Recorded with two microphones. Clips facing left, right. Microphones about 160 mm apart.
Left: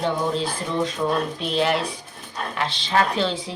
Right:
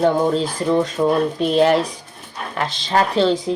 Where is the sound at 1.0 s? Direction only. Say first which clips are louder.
Right 6 dB; 25° right (ahead or behind).